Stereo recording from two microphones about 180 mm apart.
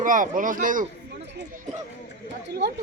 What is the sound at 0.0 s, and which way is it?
Speech, 45° right (ahead or behind).